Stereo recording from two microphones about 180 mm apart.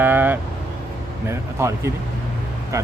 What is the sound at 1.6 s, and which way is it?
Speech, 15° right (ahead or behind).